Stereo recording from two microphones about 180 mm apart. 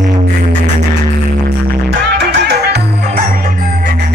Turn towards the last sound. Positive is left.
turn(degrees=-65)  # may be behind; listen again after turning